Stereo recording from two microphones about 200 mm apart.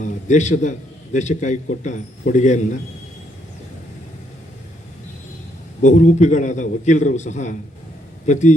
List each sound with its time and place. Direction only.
0.0 s a man's voice: 35° left (ahead or behind)
5.8 s a man's voice: 40° left (ahead or behind)